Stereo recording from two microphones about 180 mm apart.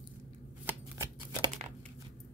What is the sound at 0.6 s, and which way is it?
Shuffling cards, 15° right (ahead or behind).